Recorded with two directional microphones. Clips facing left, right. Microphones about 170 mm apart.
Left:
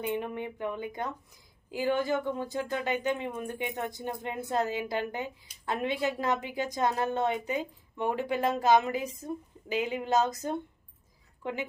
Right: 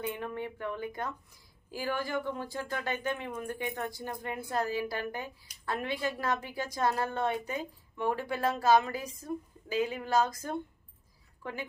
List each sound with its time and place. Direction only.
0.0 s speech: 20° left (ahead or behind)